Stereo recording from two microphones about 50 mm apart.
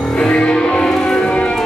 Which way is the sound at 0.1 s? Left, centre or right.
Left.